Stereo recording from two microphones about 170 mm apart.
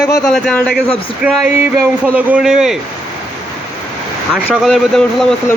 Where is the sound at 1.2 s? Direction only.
10° right (ahead or behind).